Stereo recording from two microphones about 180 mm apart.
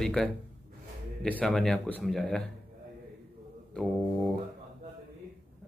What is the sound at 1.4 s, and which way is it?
Speech, 5° left (ahead or behind).